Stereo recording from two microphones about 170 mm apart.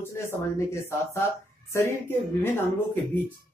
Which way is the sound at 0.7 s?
15° left (ahead or behind).